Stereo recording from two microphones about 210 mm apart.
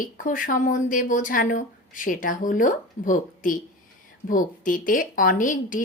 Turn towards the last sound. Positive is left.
turn(degrees=40)  # may be behind; listen again after turning